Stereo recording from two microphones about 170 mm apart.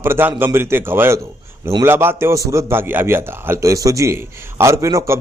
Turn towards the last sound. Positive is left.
turn(degrees=-20)  # may be behind; listen again after turning